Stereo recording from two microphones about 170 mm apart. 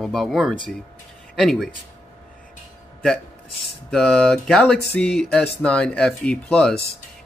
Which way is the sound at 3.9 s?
5° left (ahead or behind).